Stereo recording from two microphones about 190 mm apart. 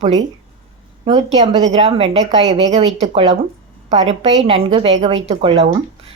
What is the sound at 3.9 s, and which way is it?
Speech, 35° right (ahead or behind).